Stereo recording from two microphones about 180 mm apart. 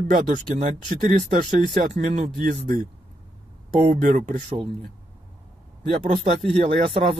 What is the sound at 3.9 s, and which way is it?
Speech, 50° right (ahead or behind).